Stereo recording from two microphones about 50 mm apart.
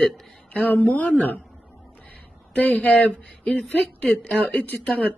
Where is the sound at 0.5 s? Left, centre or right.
Left.